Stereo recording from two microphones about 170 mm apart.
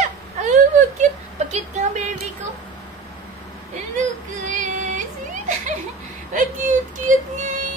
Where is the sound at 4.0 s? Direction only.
45° right (ahead or behind).